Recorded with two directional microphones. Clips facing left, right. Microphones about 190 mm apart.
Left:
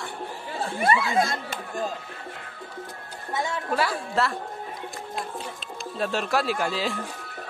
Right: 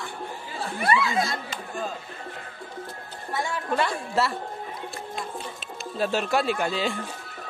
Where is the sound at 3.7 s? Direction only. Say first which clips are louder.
Right 1 dB; 5° left (ahead or behind).